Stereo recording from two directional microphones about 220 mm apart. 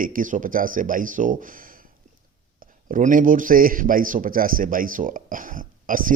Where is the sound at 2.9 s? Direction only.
40° right (ahead or behind).